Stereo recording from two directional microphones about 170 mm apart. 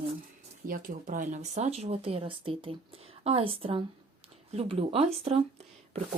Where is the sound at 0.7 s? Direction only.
55° right (ahead or behind); by 5.4 s 35° right (ahead or behind).